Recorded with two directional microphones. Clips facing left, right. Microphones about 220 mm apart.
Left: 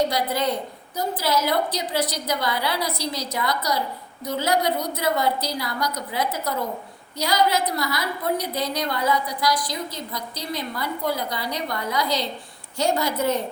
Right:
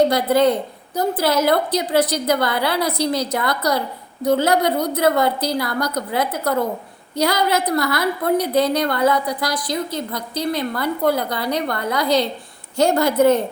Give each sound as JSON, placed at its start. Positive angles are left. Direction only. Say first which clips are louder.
{"t": 0.1, "sound": "a woman's voice", "louder": "right 8 dB", "side_deg": -55}